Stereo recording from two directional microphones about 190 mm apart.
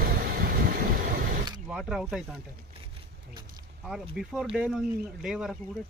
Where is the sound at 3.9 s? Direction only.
5° right (ahead or behind).